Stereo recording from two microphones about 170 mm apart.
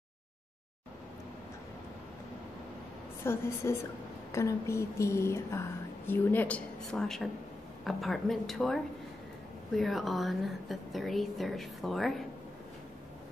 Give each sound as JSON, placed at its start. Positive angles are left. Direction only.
{"t": 3.3, "sound": "a woman's voice", "side_deg": 15}